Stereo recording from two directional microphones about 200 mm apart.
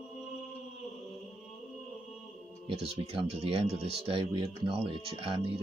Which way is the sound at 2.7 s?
30° right (ahead or behind).